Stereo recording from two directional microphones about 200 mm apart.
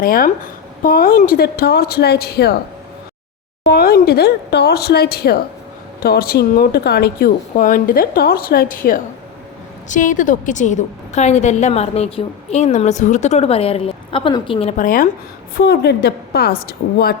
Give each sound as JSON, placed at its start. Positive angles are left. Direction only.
{"t": 0.0, "sound": "speech", "side_deg": 45}
{"t": 3.6, "sound": "a woman's voice", "side_deg": 50}